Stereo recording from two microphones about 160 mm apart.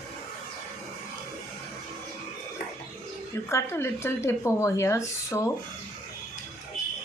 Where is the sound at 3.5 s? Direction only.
15° left (ahead or behind).